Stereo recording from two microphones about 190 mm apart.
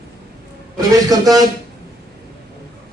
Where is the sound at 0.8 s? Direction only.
20° right (ahead or behind).